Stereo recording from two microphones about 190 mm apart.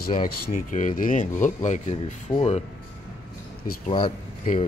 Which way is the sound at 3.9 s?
25° left (ahead or behind).